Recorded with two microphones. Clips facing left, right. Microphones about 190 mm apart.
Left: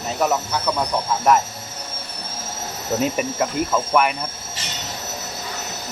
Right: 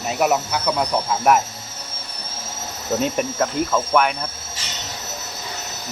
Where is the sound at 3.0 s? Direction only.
5° left (ahead or behind).